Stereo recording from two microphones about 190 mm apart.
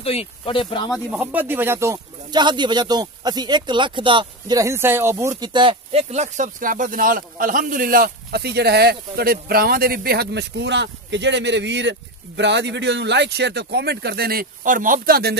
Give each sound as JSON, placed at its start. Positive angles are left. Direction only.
{"t": 0.0, "sound": "speech", "side_deg": 30}
{"t": 0.9, "sound": "speech", "side_deg": -5}